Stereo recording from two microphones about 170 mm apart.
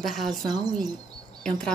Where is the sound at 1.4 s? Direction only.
5° left (ahead or behind).